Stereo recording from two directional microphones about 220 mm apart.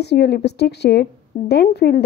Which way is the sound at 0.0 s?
50° left (ahead or behind).